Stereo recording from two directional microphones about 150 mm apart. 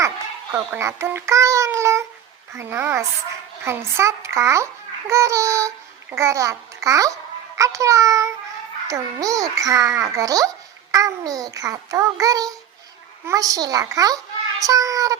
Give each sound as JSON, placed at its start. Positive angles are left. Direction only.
{"t": 0.5, "sound": "a child's voice", "side_deg": -15}